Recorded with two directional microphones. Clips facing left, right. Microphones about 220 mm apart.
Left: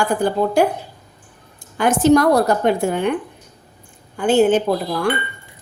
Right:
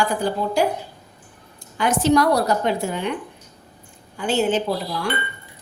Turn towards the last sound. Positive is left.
turn(degrees=50)  # may be behind; listen again after turning